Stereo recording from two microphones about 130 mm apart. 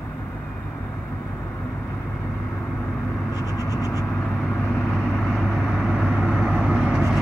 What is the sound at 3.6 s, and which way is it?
Vehicle, 25° left (ahead or behind).